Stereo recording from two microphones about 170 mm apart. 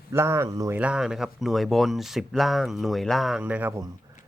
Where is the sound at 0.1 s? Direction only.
15° right (ahead or behind).